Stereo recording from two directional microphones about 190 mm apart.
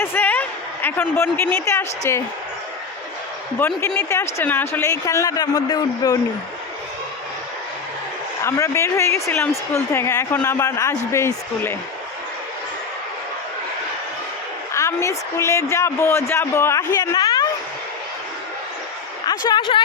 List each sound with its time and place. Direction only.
0.0 s speech: 10° left (ahead or behind)
3.6 s speech: 10° left (ahead or behind)
8.4 s speech: 15° left (ahead or behind)
14.7 s speech: 15° left (ahead or behind)
19.5 s speech: 25° left (ahead or behind)